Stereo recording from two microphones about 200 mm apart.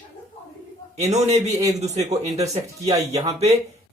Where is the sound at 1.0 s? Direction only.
35° right (ahead or behind).